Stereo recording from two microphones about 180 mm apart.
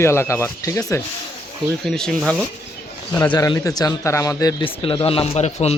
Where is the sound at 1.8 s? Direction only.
Centre (ahead or behind).